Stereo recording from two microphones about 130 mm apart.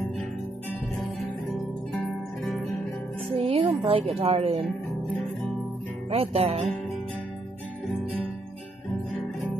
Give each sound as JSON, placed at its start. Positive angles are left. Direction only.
{"t": 3.3, "sound": "music", "side_deg": -45}
{"t": 3.8, "sound": "a woman's voice", "side_deg": -50}
{"t": 6.0, "sound": "a woman's voice", "side_deg": -50}